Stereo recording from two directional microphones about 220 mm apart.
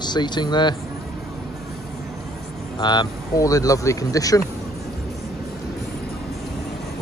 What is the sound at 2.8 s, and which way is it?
Speech, 20° left (ahead or behind).